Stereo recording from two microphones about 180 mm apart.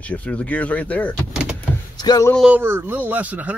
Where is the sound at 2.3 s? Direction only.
5° right (ahead or behind).